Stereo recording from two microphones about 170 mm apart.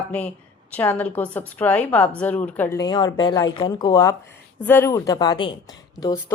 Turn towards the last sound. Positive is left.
turn(degrees=15)  # may be behind; listen again after turning